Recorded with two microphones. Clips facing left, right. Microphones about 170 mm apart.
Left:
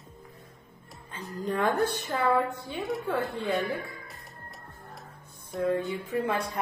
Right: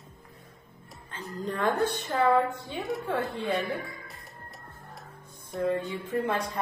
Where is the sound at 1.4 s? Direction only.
10° left (ahead or behind).